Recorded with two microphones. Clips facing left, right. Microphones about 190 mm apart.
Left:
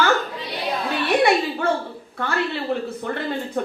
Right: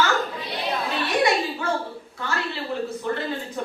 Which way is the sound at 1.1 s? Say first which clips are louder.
Left 4 dB; 55° left (ahead or behind).